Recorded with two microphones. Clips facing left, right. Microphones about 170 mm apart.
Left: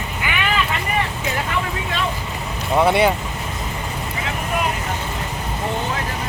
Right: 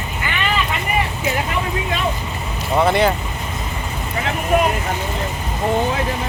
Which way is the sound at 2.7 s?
5° left (ahead or behind).